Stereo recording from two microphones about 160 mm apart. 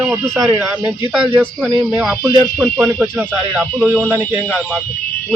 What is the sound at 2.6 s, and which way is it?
Speech, 10° right (ahead or behind).